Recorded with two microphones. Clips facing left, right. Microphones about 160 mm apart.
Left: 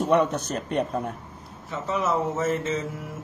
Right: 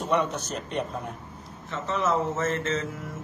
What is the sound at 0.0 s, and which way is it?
Speech, 50° left (ahead or behind).